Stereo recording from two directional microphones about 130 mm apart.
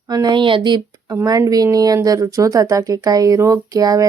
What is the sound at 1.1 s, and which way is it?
Speech, 25° right (ahead or behind).